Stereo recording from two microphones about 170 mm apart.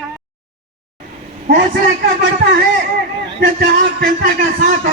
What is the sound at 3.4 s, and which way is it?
Speech, 70° right (ahead or behind).